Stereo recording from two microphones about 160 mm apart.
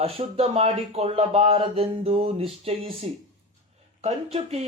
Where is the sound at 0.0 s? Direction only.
40° right (ahead or behind).